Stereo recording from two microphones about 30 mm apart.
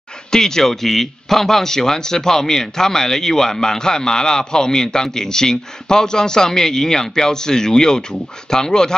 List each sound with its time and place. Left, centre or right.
0.3 s a man's voice: centre